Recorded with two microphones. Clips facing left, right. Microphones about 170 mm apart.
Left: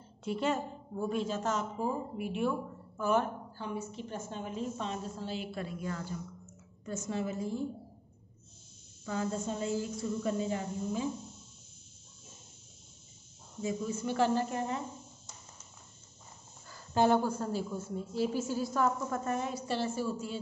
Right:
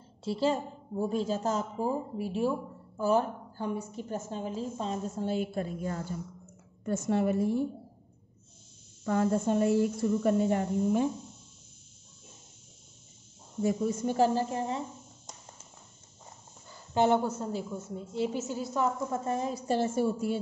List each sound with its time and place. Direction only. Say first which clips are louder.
0.2 s a woman's voice: right 3 dB; 30° right (ahead or behind)
6.8 s speech: right 7 dB; 55° right (ahead or behind)
9.0 s speech: right 7 dB; 55° right (ahead or behind)
13.6 s a woman's voice: right 6 dB; 55° right (ahead or behind); by 14.8 s 30° right (ahead or behind)
16.7 s a woman's voice: right 1 dB; 20° right (ahead or behind)
19.7 s speech: right 7 dB; 60° right (ahead or behind)